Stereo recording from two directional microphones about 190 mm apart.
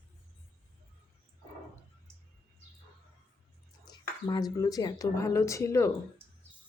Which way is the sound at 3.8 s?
20° left (ahead or behind).